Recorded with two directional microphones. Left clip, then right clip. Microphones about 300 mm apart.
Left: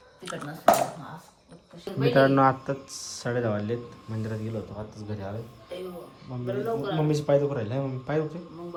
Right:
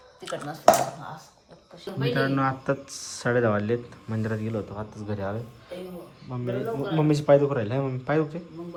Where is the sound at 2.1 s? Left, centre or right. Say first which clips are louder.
Left 6 dB; centre.